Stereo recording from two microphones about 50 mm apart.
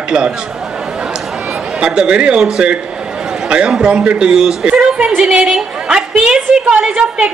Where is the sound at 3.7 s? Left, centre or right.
Centre.